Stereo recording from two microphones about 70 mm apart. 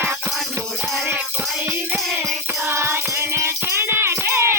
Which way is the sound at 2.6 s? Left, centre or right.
Right.